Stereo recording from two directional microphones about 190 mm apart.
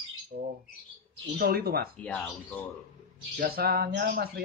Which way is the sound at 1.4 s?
50° right (ahead or behind).